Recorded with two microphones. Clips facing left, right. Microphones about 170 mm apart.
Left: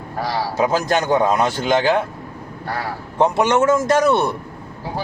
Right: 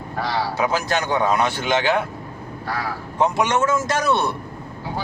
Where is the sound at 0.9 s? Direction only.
25° left (ahead or behind).